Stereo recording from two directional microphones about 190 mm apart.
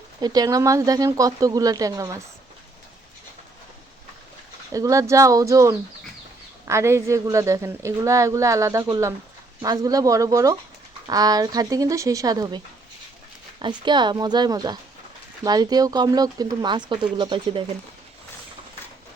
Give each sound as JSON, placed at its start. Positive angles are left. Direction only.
{"t": 0.2, "sound": "speech", "side_deg": -20}
{"t": 4.7, "sound": "a woman's voice", "side_deg": -15}